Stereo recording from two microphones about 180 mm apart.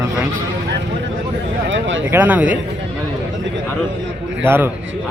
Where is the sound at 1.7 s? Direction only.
90° right.